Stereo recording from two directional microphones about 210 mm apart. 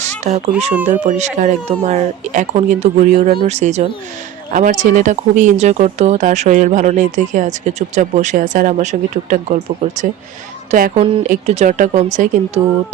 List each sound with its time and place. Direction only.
0.3 s speech: 30° right (ahead or behind)